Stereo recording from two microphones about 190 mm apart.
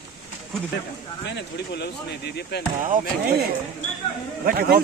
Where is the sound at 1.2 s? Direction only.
65° left (ahead or behind).